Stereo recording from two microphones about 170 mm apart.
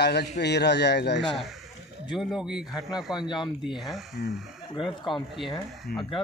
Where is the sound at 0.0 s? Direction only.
75° left (ahead or behind).